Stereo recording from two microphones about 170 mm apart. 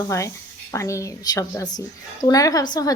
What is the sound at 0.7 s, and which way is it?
A woman's voice, 15° left (ahead or behind).